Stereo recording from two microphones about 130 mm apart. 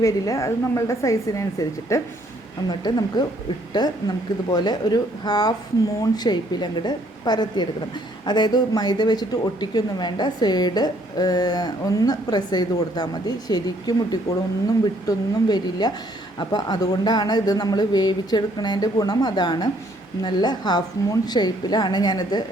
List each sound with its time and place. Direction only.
0.0 s a woman's voice: 25° left (ahead or behind)